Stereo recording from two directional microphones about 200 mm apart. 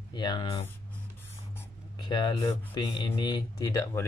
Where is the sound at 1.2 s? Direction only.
15° left (ahead or behind).